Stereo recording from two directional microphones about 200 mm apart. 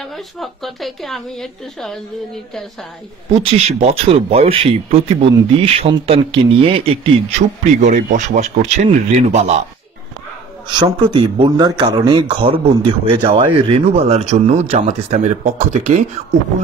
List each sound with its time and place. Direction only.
0.0 s a woman's voice: centre (ahead or behind)
3.4 s speech: 30° right (ahead or behind)
10.7 s speech: 20° right (ahead or behind)